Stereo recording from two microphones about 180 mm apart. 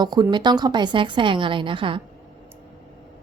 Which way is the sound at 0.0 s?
25° right (ahead or behind).